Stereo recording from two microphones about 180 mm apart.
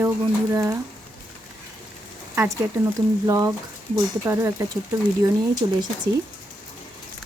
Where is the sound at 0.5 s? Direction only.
15° right (ahead or behind).